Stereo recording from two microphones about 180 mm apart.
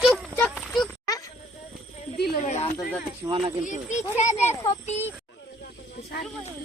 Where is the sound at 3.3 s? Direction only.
30° right (ahead or behind).